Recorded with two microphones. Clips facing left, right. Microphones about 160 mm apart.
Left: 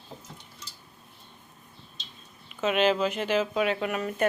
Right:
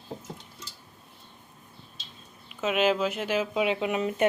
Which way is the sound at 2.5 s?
5° right (ahead or behind).